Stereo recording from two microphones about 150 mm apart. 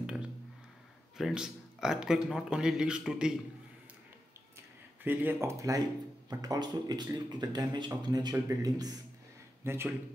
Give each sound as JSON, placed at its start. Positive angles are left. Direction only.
{"t": 1.1, "sound": "a man's voice", "side_deg": -5}
{"t": 5.0, "sound": "a man's voice", "side_deg": -15}